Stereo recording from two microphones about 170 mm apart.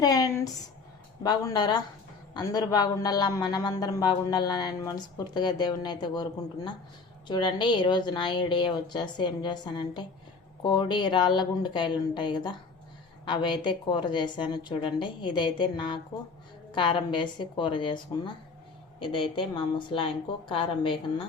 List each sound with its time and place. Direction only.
0.0 s a man's voice: 20° left (ahead or behind)